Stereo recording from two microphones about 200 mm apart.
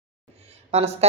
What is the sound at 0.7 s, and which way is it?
Speech, 30° right (ahead or behind).